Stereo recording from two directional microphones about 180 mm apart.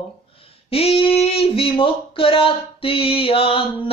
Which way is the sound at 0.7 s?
35° left (ahead or behind).